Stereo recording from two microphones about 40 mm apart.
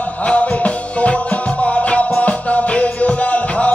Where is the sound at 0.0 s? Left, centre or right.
Left.